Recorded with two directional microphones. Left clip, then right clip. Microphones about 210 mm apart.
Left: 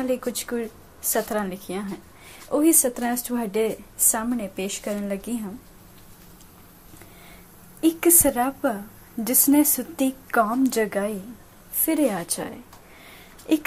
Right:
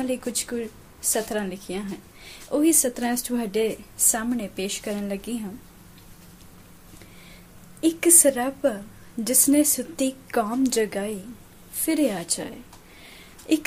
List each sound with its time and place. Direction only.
0.0 s a woman's voice: centre (ahead or behind)
7.8 s a woman's voice: centre (ahead or behind)